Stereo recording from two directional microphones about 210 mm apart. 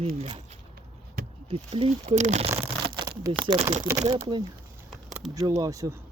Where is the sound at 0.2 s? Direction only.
35° right (ahead or behind).